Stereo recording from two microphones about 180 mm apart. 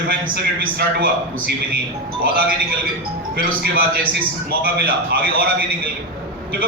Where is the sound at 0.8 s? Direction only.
55° right (ahead or behind).